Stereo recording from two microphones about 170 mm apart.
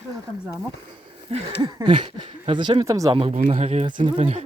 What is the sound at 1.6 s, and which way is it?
Speech, 25° right (ahead or behind).